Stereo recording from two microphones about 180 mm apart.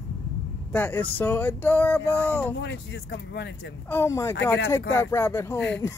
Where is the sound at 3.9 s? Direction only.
15° left (ahead or behind).